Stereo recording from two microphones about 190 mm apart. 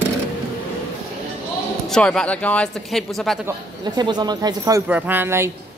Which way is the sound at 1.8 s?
5° left (ahead or behind).